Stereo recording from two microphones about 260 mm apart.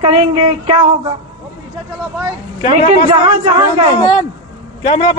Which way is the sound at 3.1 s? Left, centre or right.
Centre.